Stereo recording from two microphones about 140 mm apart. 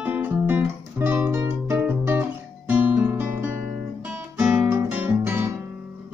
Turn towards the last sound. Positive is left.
turn(degrees=-15)  # may be behind; listen again after turning